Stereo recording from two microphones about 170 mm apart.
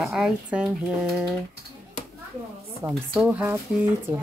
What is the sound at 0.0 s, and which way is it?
Speech, 5° right (ahead or behind).